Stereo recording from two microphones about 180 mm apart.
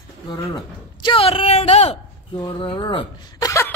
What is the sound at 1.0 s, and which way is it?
Speech, 30° left (ahead or behind).